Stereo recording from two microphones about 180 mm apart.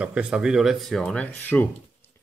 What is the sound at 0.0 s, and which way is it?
Speech, 5° right (ahead or behind).